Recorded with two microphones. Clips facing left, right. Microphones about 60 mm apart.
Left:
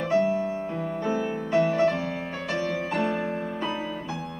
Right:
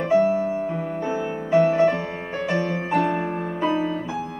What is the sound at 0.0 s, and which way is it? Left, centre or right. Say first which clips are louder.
Music: right 4 dB; centre.